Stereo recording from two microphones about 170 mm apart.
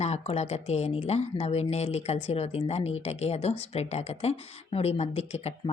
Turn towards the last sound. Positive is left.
turn(degrees=40)  # may be behind; listen again after turning